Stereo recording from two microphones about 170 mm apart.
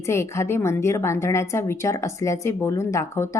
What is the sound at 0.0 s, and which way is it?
A woman's voice, 15° left (ahead or behind).